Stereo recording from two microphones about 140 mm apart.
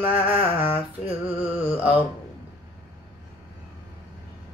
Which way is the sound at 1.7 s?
10° right (ahead or behind).